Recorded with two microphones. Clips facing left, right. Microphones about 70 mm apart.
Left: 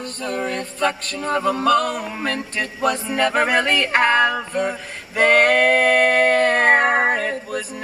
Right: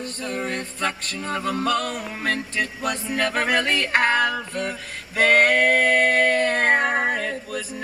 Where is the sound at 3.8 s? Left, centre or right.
Left.